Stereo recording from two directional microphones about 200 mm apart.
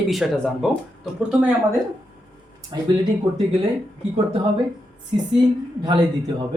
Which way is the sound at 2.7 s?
20° right (ahead or behind).